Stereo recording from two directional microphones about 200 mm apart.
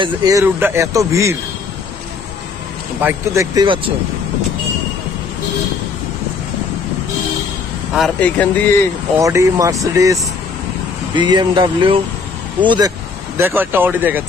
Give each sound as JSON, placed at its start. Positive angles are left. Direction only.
{"t": 0.0, "sound": "a man's voice", "side_deg": -20}
{"t": 3.0, "sound": "speech", "side_deg": -10}
{"t": 7.9, "sound": "a man's voice", "side_deg": 5}
{"t": 9.2, "sound": "a man's voice", "side_deg": -15}
{"t": 13.4, "sound": "a man's voice", "side_deg": -10}